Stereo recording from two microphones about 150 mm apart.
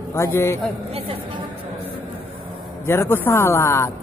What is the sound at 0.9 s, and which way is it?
Music, 40° right (ahead or behind).